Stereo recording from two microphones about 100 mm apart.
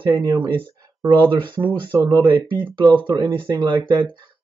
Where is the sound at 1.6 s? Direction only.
20° right (ahead or behind).